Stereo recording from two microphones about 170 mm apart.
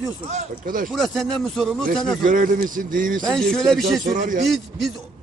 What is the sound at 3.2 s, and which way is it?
Speech, 5° left (ahead or behind).